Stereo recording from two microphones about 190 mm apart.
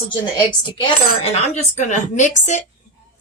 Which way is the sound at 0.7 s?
25° left (ahead or behind).